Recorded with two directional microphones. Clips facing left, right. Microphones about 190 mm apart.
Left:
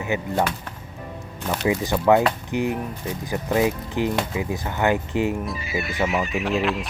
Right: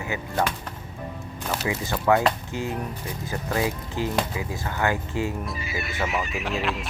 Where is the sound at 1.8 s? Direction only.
20° left (ahead or behind).